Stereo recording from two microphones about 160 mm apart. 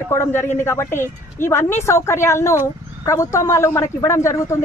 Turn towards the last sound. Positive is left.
turn(degrees=20)  # may be behind; listen again after turning